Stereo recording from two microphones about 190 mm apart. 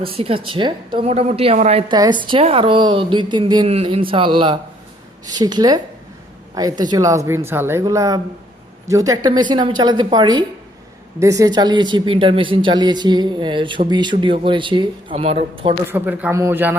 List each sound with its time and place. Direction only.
0.0 s a woman's voice: 30° right (ahead or behind)
1.9 s a woman's voice: 25° right (ahead or behind)
15.9 s a woman's voice: 10° right (ahead or behind)